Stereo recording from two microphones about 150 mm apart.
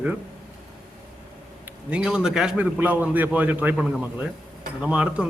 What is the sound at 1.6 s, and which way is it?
A man's voice, 10° right (ahead or behind).